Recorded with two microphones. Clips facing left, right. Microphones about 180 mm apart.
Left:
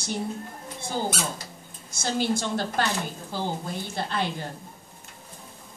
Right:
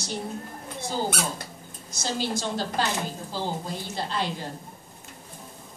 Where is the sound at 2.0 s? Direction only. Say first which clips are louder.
Left 3 dB; 55° left (ahead or behind).